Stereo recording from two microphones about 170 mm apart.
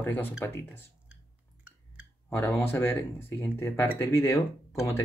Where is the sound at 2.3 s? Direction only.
10° left (ahead or behind).